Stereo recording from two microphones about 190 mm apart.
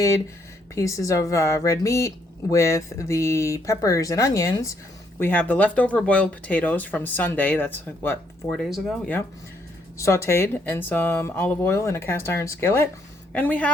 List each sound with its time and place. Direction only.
0.8 s speech: 15° left (ahead or behind)
8.6 s speech: centre (ahead or behind)